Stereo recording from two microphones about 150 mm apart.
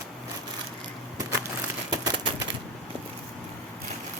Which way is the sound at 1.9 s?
25° right (ahead or behind).